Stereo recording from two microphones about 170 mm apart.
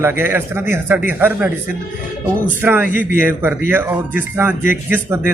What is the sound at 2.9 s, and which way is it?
Speech, 55° left (ahead or behind).